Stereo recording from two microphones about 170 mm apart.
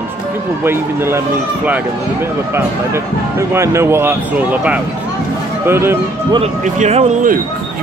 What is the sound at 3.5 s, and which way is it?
Speech, 15° right (ahead or behind).